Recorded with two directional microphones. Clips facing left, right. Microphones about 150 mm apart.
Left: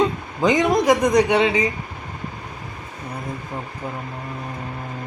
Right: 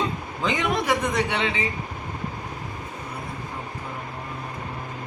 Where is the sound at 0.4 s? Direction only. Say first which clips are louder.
Left 8 dB; 40° left (ahead or behind).